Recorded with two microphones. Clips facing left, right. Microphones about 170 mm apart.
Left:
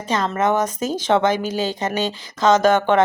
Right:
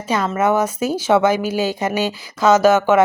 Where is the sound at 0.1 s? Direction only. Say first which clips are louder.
Right 2 dB; 10° right (ahead or behind).